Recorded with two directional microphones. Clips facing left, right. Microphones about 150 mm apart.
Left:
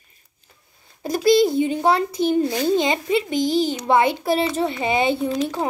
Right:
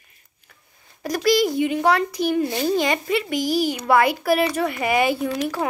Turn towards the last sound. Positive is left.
turn(degrees=25)  # may be behind; listen again after turning